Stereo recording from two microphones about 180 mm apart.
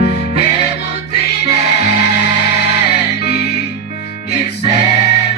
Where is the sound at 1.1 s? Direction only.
65° left (ahead or behind).